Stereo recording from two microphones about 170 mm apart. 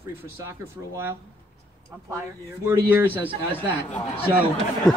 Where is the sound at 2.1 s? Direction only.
15° right (ahead or behind).